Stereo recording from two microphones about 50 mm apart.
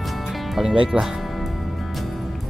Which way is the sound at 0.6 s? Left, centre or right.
Centre.